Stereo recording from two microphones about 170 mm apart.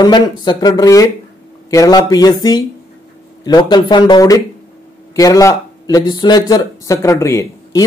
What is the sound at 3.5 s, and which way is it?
Speech, 25° left (ahead or behind).